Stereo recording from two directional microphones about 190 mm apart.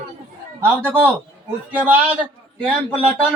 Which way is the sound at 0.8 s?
10° right (ahead or behind).